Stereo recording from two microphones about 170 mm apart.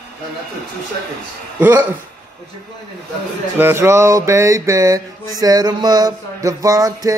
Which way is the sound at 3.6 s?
15° right (ahead or behind).